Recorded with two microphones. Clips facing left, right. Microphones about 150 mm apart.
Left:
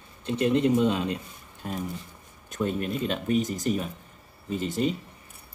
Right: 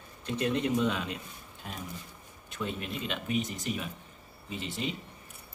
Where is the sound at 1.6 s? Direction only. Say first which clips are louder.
Left 9 dB; 45° left (ahead or behind).